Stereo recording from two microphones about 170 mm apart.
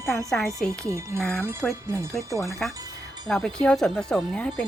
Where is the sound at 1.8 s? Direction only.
15° right (ahead or behind).